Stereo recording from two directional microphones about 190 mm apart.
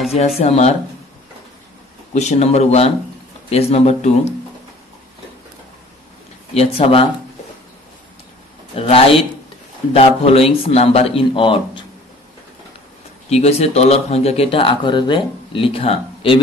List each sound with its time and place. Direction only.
0.4 s speech: 35° left (ahead or behind)
2.1 s speech: 35° left (ahead or behind)
6.5 s speech: 30° left (ahead or behind)
8.7 s speech: 30° left (ahead or behind)
13.3 s speech: 35° left (ahead or behind)